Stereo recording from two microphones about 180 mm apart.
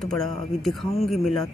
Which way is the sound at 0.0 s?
Centre (ahead or behind).